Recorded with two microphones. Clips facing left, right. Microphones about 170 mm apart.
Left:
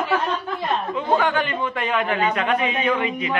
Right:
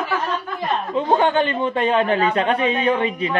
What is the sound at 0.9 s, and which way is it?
A man's voice, 25° right (ahead or behind).